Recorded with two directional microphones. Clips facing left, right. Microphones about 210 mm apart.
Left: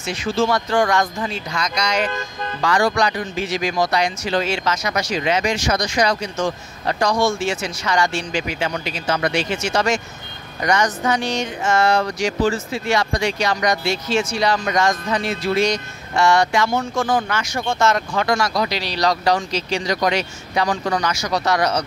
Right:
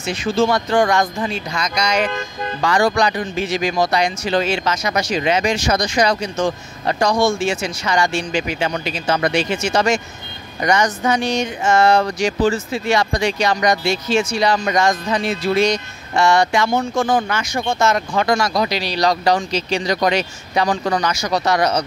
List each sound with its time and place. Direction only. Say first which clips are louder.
0.4 s speech: right 2 dB; 20° right (ahead or behind)
11.7 s speech: right 3 dB; 30° right (ahead or behind)
12.2 s speech: right 2 dB; 20° right (ahead or behind)